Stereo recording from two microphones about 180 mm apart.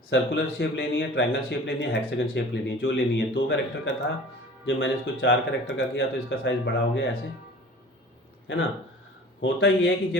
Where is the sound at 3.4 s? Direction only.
80° left.